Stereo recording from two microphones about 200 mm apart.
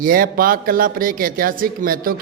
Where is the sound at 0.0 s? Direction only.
45° right (ahead or behind).